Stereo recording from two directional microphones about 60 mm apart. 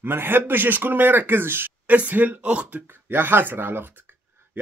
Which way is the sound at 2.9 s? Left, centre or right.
Right.